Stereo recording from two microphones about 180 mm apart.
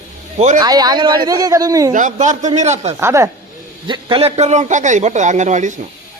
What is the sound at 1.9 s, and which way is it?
A man's voice, 45° right (ahead or behind).